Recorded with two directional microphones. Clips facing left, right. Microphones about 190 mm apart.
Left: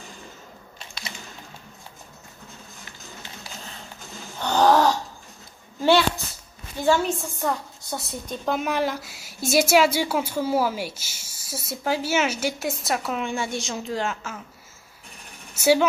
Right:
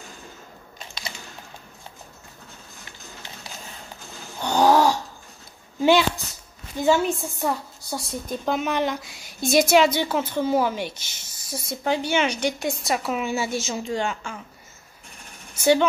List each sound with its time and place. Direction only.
4.4 s a sound: 10° right (ahead or behind)
6.8 s a woman's voice: 15° right (ahead or behind)
7.4 s speech: 5° right (ahead or behind)
15.5 s speech: 5° left (ahead or behind)